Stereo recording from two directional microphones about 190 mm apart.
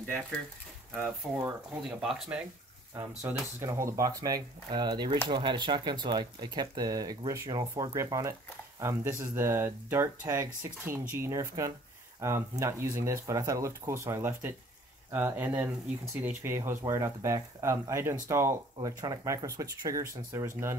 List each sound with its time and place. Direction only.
0.9 s speech: 5° right (ahead or behind)